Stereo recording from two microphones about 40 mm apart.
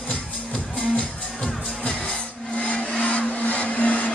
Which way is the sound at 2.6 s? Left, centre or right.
Left.